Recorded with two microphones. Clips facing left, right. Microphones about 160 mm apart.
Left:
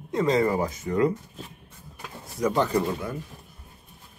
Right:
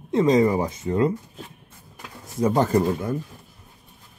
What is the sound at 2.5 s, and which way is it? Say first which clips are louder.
Speech: right 4 dB; 45° right (ahead or behind).